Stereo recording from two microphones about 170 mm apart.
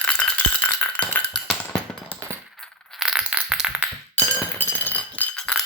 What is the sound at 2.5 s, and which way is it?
Coin, centre (ahead or behind).